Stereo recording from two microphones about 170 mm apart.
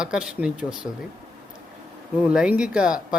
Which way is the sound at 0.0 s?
5° right (ahead or behind).